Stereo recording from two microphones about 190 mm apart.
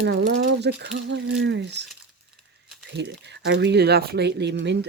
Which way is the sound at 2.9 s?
65° right (ahead or behind).